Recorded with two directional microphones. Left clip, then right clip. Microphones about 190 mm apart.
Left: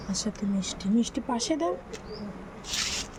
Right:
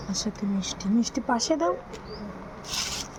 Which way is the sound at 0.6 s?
10° right (ahead or behind).